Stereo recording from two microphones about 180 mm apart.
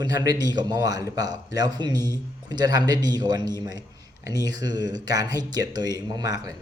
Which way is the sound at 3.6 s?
20° right (ahead or behind).